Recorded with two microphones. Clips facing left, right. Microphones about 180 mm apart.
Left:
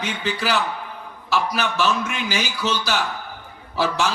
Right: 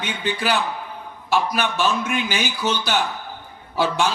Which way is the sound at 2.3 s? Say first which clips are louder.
Right 1 dB; 25° right (ahead or behind).